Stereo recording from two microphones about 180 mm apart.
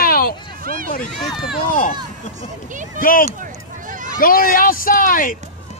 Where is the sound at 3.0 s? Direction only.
50° left (ahead or behind).